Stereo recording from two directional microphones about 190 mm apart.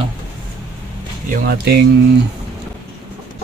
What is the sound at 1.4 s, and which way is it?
Speech, 60° right (ahead or behind).